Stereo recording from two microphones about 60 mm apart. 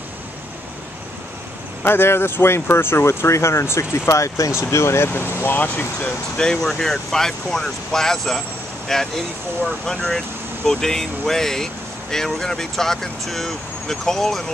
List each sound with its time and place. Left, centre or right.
1.9 s speech: left
4.1 s speech: left
4.6 s speech: left
5.6 s speech: left
6.3 s speech: centre
6.6 s speech: centre